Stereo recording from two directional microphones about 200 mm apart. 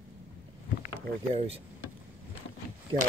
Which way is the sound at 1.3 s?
30° right (ahead or behind).